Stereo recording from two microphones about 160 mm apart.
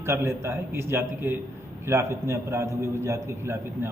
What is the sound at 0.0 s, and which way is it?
A man's voice, 15° right (ahead or behind).